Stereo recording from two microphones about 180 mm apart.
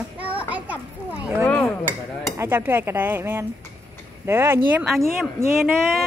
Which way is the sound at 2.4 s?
10° right (ahead or behind).